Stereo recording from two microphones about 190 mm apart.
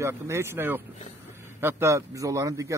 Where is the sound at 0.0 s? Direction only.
15° right (ahead or behind).